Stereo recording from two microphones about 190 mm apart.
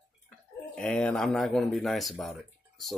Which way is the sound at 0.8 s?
5° left (ahead or behind).